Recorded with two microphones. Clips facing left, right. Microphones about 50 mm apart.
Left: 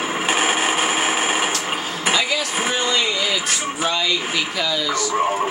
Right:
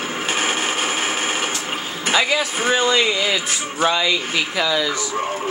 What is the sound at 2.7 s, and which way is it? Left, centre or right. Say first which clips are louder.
Speech: right 5 dB; centre.